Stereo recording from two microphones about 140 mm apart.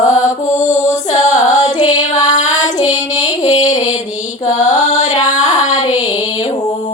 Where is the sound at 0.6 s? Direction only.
55° left (ahead or behind).